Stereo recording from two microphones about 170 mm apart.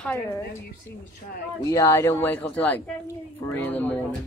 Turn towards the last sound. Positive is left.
turn(degrees=10)  # may be behind; listen again after turning